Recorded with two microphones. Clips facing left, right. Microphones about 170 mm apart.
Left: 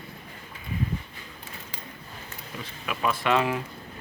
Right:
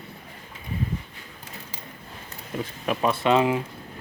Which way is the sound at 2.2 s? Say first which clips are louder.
Right 9 dB; 40° right (ahead or behind).